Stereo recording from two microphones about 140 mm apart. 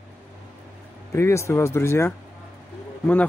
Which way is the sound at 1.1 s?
20° left (ahead or behind).